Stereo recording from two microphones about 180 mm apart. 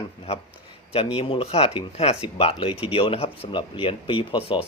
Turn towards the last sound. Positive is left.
turn(degrees=30)  # may be behind; listen again after turning